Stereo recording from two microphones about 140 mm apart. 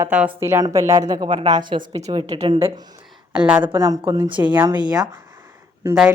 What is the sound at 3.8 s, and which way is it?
Speech, 25° right (ahead or behind).